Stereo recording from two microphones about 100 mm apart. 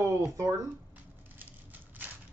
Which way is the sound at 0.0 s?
30° right (ahead or behind).